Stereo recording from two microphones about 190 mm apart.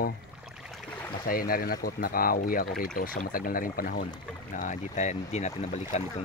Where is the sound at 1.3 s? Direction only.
50° left (ahead or behind).